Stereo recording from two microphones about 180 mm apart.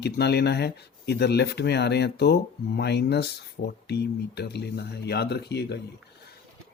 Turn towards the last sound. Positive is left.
turn(degrees=65)  # may be behind; listen again after turning